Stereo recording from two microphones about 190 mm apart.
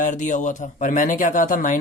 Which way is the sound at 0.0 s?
40° left (ahead or behind).